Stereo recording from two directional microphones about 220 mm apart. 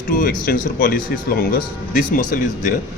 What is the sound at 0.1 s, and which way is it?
Speech, 40° left (ahead or behind).